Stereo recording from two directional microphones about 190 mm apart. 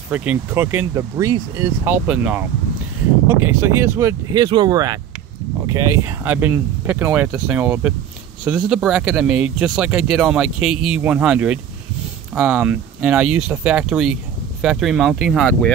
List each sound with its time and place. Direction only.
0.1 s speech: 10° right (ahead or behind)